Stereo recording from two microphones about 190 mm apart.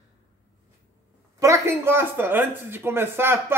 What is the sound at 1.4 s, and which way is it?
A child's voice, 15° right (ahead or behind).